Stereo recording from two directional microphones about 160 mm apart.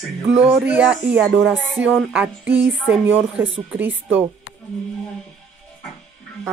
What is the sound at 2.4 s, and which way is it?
A woman's voice, 15° right (ahead or behind).